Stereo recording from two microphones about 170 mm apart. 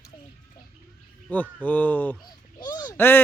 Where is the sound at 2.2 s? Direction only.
25° left (ahead or behind).